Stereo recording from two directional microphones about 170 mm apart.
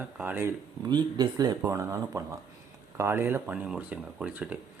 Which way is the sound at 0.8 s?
25° right (ahead or behind).